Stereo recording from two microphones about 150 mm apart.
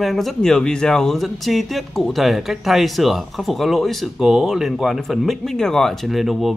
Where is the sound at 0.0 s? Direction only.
Centre (ahead or behind).